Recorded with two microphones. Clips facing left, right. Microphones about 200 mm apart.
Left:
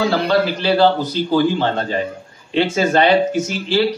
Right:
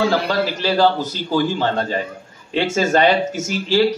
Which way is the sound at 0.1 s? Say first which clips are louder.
Left 3 dB; 40° right (ahead or behind).